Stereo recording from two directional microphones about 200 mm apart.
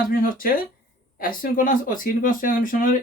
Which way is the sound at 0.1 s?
45° left (ahead or behind).